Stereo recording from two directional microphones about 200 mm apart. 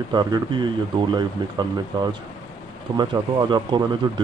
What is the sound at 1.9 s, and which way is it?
Speech, 20° right (ahead or behind).